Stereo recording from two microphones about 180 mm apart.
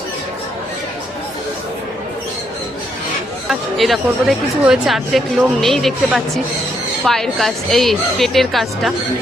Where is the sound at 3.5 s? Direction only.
Centre (ahead or behind).